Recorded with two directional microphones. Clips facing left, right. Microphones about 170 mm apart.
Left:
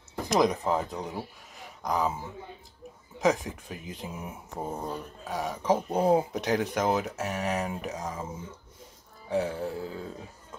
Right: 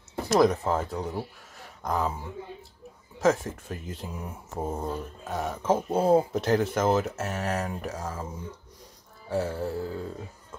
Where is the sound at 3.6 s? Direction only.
15° left (ahead or behind).